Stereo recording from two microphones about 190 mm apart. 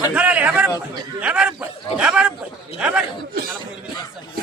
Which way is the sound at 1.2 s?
5° right (ahead or behind).